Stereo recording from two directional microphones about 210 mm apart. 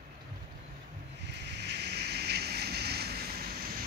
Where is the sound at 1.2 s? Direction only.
55° right (ahead or behind).